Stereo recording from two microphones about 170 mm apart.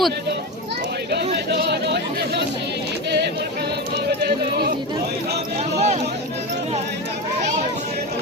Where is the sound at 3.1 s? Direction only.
80° right.